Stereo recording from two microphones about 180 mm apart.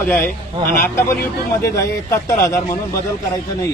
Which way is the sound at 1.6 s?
15° left (ahead or behind).